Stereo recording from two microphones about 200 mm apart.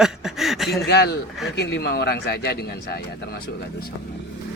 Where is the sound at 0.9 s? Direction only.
55° left (ahead or behind).